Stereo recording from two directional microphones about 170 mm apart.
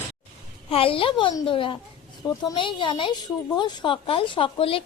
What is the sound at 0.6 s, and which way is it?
A woman's voice, 30° left (ahead or behind).